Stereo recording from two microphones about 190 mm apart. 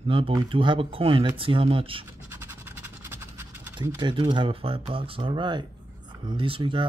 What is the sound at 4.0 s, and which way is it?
Speech, 25° right (ahead or behind).